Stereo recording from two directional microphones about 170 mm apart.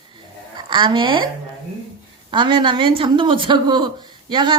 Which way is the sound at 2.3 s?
30° right (ahead or behind).